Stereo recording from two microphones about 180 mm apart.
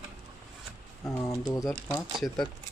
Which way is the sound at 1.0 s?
15° left (ahead or behind).